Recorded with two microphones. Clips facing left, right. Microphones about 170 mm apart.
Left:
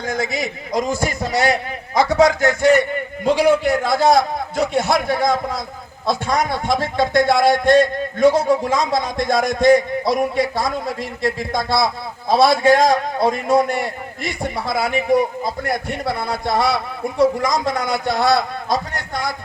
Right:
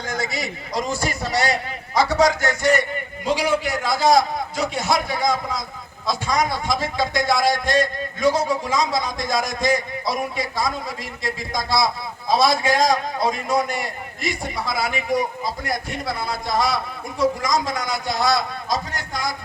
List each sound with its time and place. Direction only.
0.0 s a man's voice: 55° left (ahead or behind)